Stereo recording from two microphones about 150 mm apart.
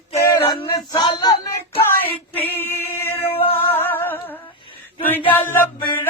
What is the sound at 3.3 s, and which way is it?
Music, 40° left (ahead or behind).